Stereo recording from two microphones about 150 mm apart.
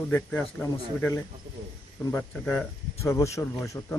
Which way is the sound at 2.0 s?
Centre (ahead or behind).